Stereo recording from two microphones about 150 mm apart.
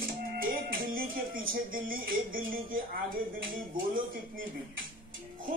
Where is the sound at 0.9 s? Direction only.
70° right (ahead or behind).